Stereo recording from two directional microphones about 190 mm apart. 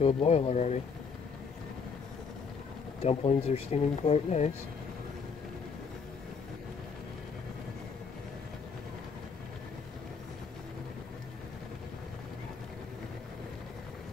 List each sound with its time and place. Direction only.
0.0 s speech: 30° left (ahead or behind)
3.0 s speech: 35° left (ahead or behind)